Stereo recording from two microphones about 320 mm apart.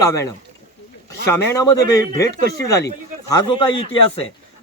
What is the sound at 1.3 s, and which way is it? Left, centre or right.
Speech, centre.